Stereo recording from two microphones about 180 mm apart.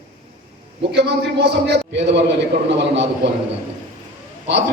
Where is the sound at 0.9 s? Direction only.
70° right (ahead or behind).